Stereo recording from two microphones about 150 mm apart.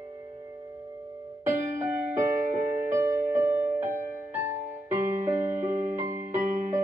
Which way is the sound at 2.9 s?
15° right (ahead or behind).